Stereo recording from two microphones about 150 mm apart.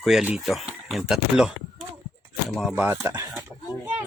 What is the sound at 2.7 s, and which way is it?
Speech, 15° right (ahead or behind).